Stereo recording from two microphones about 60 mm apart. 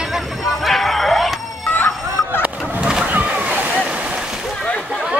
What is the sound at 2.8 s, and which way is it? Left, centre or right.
Vehicle, centre.